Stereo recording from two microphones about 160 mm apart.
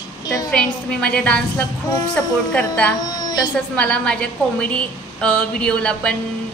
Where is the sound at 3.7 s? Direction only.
5° left (ahead or behind).